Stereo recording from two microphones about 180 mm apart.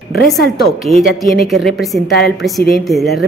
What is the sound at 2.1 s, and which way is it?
Speech, 70° left (ahead or behind).